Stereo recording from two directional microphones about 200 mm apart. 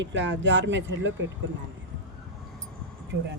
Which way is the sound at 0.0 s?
65° right (ahead or behind).